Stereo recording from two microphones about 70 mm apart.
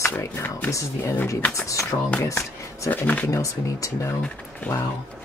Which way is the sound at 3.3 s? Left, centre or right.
Left.